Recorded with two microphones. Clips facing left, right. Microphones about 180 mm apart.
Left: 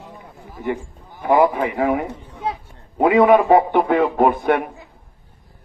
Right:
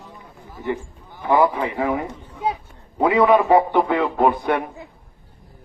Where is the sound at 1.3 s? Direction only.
15° left (ahead or behind).